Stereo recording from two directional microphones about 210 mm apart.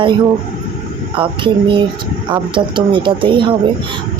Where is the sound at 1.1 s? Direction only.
25° right (ahead or behind).